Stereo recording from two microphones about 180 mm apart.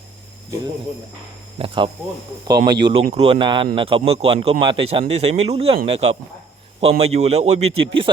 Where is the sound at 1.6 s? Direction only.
30° right (ahead or behind).